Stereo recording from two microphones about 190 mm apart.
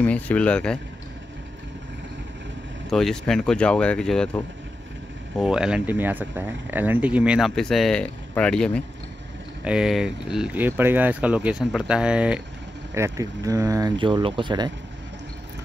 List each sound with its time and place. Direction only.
0.0 s speech: 5° left (ahead or behind)
2.9 s speech: centre (ahead or behind)
5.4 s speech: 5° right (ahead or behind)
12.9 s speech: 15° right (ahead or behind)